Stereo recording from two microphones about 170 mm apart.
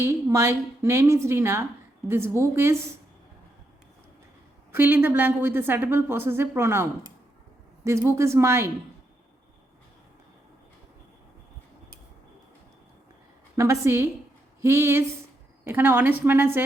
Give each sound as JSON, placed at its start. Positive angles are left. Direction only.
{"t": 0.0, "sound": "a woman's voice", "side_deg": -15}
{"t": 4.7, "sound": "a woman's voice", "side_deg": -10}
{"t": 13.6, "sound": "a woman's voice", "side_deg": -15}